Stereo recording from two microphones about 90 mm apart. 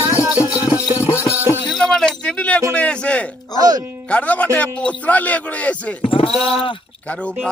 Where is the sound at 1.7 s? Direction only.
5° left (ahead or behind).